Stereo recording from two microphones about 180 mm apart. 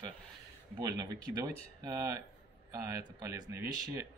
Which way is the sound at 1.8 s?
20° right (ahead or behind).